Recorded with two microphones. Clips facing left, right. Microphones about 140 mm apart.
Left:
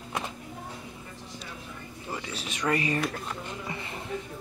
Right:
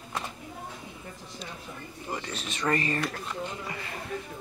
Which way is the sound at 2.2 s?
10° left (ahead or behind).